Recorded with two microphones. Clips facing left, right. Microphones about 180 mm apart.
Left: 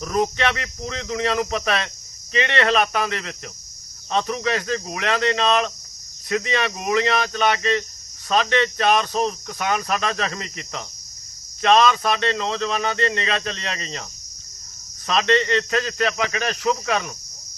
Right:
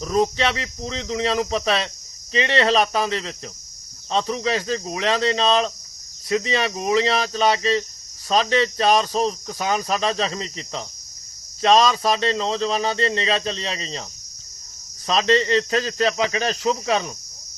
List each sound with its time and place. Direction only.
0.0 s speech: 30° right (ahead or behind)
15.0 s speech: 30° right (ahead or behind)